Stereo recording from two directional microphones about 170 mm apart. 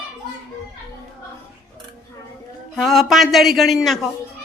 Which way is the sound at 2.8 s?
Centre (ahead or behind).